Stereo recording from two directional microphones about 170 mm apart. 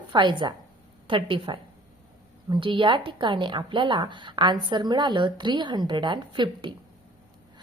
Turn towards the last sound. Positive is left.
turn(degrees=-30)  # may be behind; listen again after turning